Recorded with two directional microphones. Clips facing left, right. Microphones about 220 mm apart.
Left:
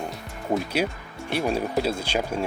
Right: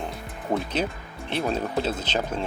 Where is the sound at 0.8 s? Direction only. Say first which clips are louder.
Left 2 dB; 10° left (ahead or behind).